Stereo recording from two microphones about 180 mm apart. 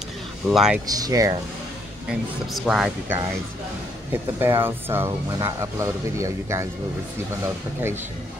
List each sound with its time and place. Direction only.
0.5 s speech: centre (ahead or behind)
0.8 s speech: 20° right (ahead or behind)
2.0 s speech: 5° right (ahead or behind)